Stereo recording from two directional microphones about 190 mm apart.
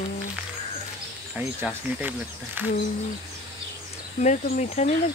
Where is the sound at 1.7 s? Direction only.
10° right (ahead or behind).